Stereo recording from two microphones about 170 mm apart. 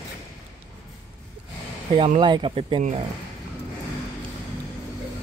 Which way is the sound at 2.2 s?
30° right (ahead or behind).